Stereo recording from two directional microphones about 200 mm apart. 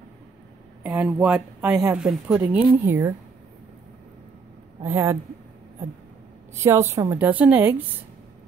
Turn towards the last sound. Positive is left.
turn(degrees=-10)  # may be behind; listen again after turning